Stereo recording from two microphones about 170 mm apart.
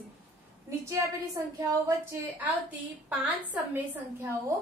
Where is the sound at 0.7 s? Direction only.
15° right (ahead or behind).